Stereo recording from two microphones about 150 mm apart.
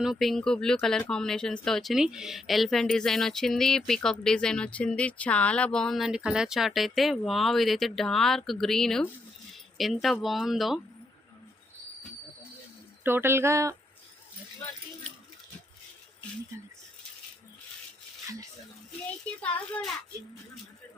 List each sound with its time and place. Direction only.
0.0 s speech: centre (ahead or behind)
13.0 s speech: 15° right (ahead or behind)
19.4 s a child's voice: 10° left (ahead or behind)